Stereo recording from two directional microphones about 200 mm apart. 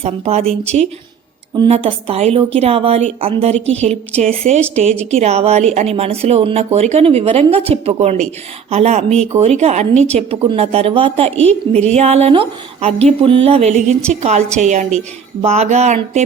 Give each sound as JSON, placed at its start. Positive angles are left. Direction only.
{"t": 0.0, "sound": "a woman's voice", "side_deg": -30}
{"t": 0.4, "sound": "speech", "side_deg": 5}
{"t": 1.5, "sound": "a woman's voice", "side_deg": -30}